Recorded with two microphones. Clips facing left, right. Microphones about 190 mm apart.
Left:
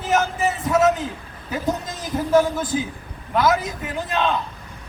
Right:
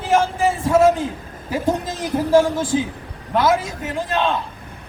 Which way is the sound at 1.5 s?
30° right (ahead or behind).